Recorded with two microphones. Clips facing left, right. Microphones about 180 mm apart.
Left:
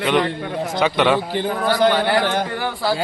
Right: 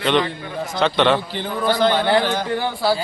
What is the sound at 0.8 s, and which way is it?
Speech, 5° left (ahead or behind).